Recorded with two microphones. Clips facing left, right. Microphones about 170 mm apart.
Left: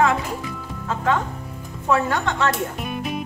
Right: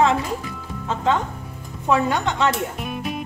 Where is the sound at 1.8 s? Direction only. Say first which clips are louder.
Right 1 dB; 15° right (ahead or behind).